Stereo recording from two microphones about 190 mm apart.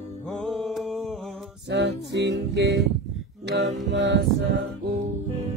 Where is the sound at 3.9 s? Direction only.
65° right (ahead or behind).